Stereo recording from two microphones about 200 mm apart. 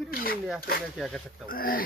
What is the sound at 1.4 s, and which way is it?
Speech, 45° left (ahead or behind).